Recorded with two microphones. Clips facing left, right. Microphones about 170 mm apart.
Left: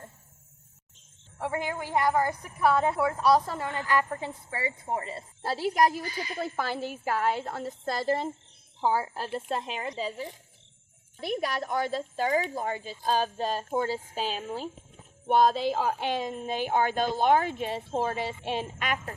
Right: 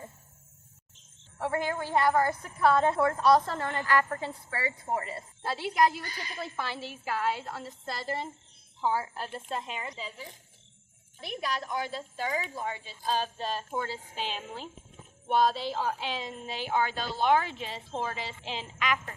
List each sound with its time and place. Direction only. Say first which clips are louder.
1.4 s a woman's voice: right 1 dB; 15° left (ahead or behind)
5.4 s speech: left 2 dB; 40° left (ahead or behind)
11.6 s speech: left 5 dB; 50° left (ahead or behind)